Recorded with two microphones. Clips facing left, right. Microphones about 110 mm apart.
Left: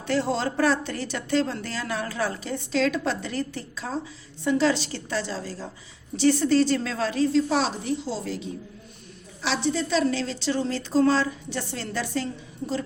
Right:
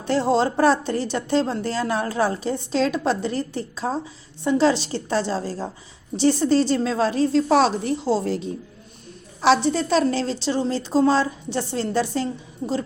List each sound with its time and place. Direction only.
0.0 s a woman's voice: 30° right (ahead or behind)
7.5 s a woman's voice: 50° right (ahead or behind); by 12.8 s 25° right (ahead or behind)